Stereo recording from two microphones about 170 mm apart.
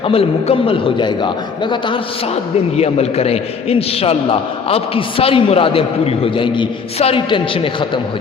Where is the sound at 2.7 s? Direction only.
40° left (ahead or behind).